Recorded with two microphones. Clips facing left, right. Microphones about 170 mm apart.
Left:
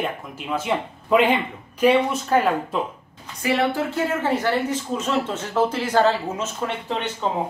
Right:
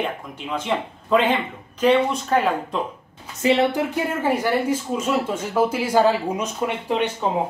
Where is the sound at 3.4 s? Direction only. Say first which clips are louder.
Right 3 dB; 20° right (ahead or behind).